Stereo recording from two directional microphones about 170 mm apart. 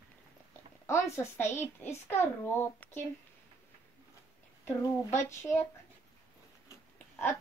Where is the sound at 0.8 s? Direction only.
15° left (ahead or behind).